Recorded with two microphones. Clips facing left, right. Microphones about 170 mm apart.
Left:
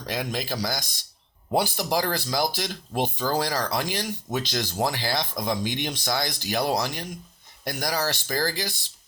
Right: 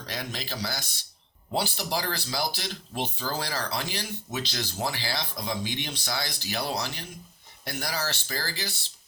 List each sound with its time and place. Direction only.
0.0 s speech: 50° left (ahead or behind)